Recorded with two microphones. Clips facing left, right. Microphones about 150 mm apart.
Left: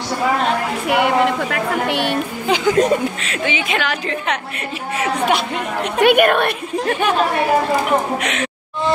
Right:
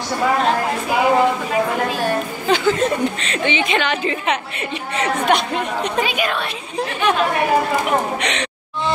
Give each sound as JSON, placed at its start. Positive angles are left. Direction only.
{"t": 0.8, "sound": "a woman's voice", "side_deg": 75}
{"t": 2.4, "sound": "a woman's voice", "side_deg": 15}
{"t": 5.9, "sound": "a woman's voice", "side_deg": 60}
{"t": 8.2, "sound": "a woman's voice", "side_deg": 5}